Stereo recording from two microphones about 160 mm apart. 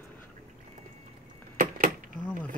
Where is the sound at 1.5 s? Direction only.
60° right (ahead or behind).